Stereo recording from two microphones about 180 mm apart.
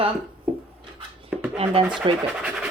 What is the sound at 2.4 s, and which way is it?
Scratch, 5° right (ahead or behind).